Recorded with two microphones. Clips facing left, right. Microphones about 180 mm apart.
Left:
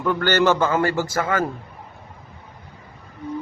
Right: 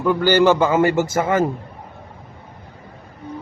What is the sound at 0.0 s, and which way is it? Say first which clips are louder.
A man's voice: right 4 dB; 10° right (ahead or behind).